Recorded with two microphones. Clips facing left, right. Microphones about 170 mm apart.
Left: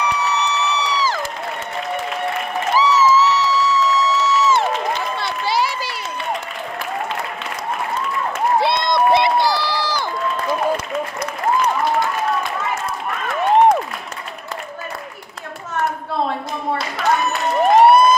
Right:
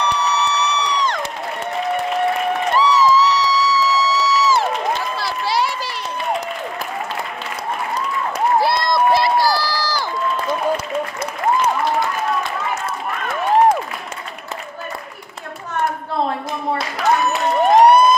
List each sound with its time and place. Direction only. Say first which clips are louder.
0.0 s crowd: right 1 dB; centre (ahead or behind)
2.6 s music: left 1 dB; centre (ahead or behind)
8.5 s run: even; 25° left (ahead or behind)
11.6 s applause: even; centre (ahead or behind)
17.0 s a sound: right 2 dB; centre (ahead or behind)